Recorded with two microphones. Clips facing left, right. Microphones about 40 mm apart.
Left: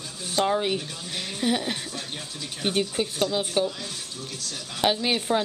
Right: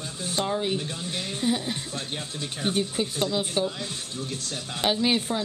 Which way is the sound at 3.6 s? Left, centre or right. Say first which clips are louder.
Left 3 dB; centre.